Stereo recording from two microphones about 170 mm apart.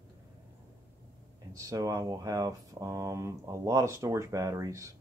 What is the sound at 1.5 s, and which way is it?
Speech, 20° right (ahead or behind).